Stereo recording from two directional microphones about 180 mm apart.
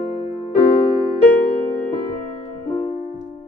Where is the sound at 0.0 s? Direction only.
35° left (ahead or behind).